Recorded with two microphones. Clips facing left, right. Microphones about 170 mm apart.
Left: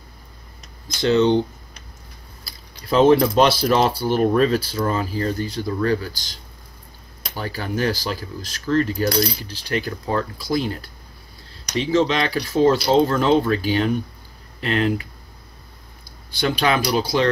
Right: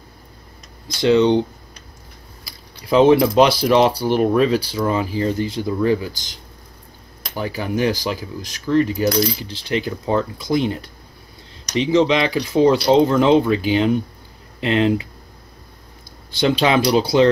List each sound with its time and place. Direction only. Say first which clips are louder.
1.0 s speech: right 2 dB; 15° right (ahead or behind)
2.4 s speech: right 1 dB; 15° right (ahead or behind)
7.3 s speech: right 3 dB; 15° right (ahead or behind)
16.3 s speech: right 3 dB; 20° right (ahead or behind)